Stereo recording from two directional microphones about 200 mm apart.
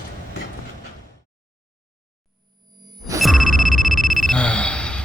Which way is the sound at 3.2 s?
Centre (ahead or behind).